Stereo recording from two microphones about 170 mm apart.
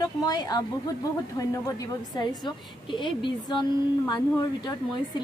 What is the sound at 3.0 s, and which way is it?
Speech, 30° left (ahead or behind).